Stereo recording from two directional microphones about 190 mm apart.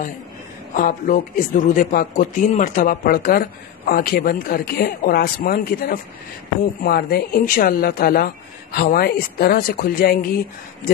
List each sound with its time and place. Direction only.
0.7 s speech: 45° left (ahead or behind)